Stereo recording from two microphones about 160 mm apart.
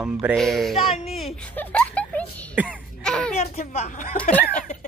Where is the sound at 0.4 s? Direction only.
Centre (ahead or behind).